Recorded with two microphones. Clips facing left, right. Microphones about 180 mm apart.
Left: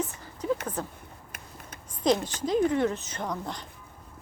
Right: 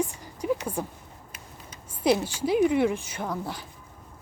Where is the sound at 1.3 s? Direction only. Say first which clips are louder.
Left 2 dB; 55° left (ahead or behind).